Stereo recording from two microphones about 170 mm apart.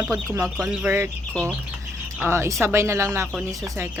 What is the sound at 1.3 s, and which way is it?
Speech, 5° left (ahead or behind).